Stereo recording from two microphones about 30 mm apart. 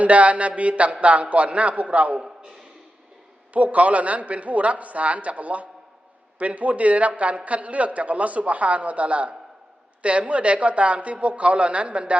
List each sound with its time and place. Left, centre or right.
0.0 s a man's voice: right
3.5 s a man's voice: right